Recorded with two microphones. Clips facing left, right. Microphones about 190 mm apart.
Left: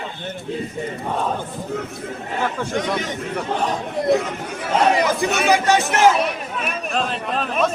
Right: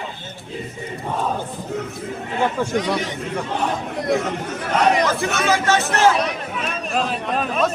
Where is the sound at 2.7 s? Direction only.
45° left (ahead or behind).